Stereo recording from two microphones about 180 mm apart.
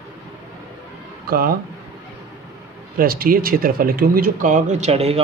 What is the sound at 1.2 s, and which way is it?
Speech, 55° right (ahead or behind).